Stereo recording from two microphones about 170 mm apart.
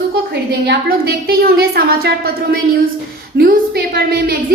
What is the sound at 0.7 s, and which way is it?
A woman's voice, 70° right (ahead or behind).